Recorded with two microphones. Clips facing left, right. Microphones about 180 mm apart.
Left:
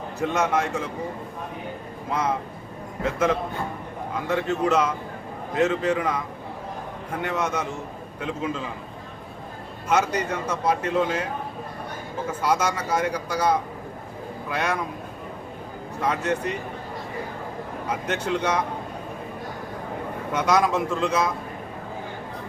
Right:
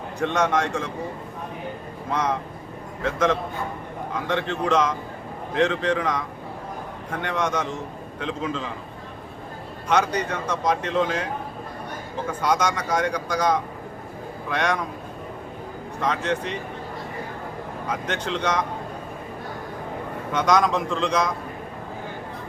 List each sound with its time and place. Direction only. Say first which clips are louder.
0.2 s speech: right 1 dB; 5° left (ahead or behind)
3.0 s speech: even; 10° left (ahead or behind)
9.9 s speech: even; 5° left (ahead or behind)
12.4 s a man's voice: right 1 dB; 5° left (ahead or behind)
16.0 s speech: even; 10° left (ahead or behind)
17.8 s speech: left 1 dB; 10° left (ahead or behind)
20.3 s speech: right 1 dB; 5° left (ahead or behind)